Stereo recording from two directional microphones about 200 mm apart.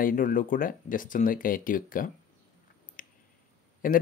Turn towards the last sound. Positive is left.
turn(degrees=45)  # may be behind; listen again after turning